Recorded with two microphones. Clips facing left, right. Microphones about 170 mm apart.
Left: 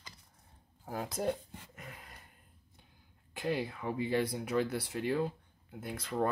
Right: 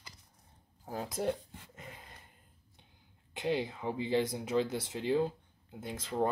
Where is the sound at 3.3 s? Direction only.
20° right (ahead or behind).